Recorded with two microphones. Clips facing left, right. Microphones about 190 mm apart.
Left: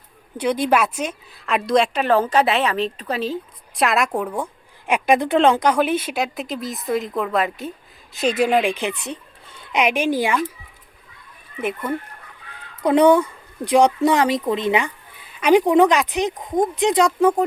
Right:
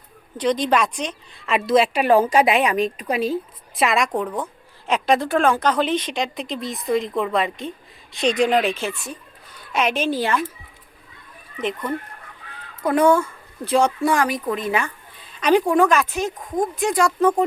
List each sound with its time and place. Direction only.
0.3 s a woman's voice: 10° left (ahead or behind); by 3.3 s 10° right (ahead or behind)
3.8 s speech: centre (ahead or behind); by 9.8 s 25° left (ahead or behind)
9.8 s speech: 15° left (ahead or behind)
11.6 s speech: 10° left (ahead or behind)
12.8 s speech: 20° left (ahead or behind)